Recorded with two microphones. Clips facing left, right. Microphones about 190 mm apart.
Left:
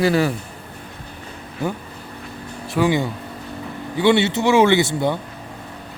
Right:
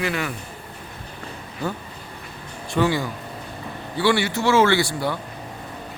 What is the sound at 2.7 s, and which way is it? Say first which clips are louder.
Speech: left 2 dB; 10° left (ahead or behind).